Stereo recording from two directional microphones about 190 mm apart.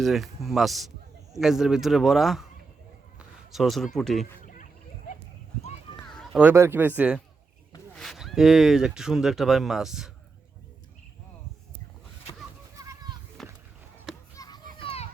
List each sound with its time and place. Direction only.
0.0 s speech: centre (ahead or behind)
3.2 s a sound: centre (ahead or behind)
3.9 s speech: centre (ahead or behind)
4.4 s a sound: 40° left (ahead or behind)
6.0 s run: centre (ahead or behind)
6.4 s speech: 10° right (ahead or behind)
12.8 s children playing: 20° right (ahead or behind)
13.4 s a sound: centre (ahead or behind)
14.3 s children playing: 20° left (ahead or behind)